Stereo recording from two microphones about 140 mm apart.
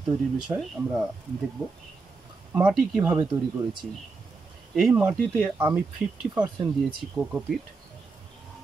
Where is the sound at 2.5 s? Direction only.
10° right (ahead or behind).